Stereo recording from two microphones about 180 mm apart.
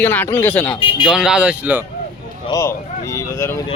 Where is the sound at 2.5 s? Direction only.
15° left (ahead or behind).